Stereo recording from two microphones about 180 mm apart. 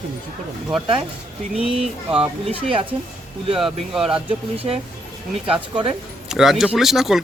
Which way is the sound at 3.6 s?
Centre (ahead or behind).